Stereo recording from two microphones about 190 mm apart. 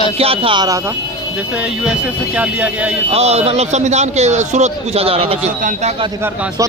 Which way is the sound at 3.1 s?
35° right (ahead or behind).